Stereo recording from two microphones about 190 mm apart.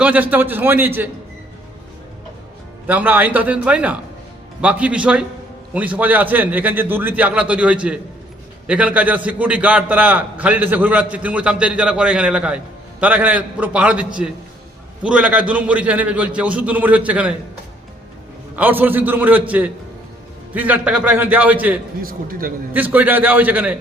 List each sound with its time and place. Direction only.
0.0 s a man's voice: 10° right (ahead or behind)
2.8 s a man's voice: 10° right (ahead or behind)
18.5 s a man's voice: 10° right (ahead or behind)
22.0 s a man's voice: 50° right (ahead or behind)
22.7 s a man's voice: 10° right (ahead or behind)